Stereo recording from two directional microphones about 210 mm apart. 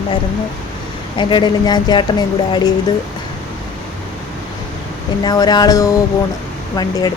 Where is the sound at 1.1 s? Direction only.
20° left (ahead or behind).